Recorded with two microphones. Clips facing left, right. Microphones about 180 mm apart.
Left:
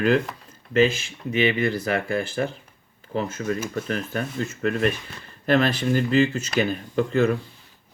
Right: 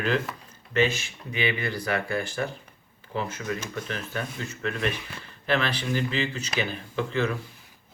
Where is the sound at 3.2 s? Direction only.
40° left (ahead or behind).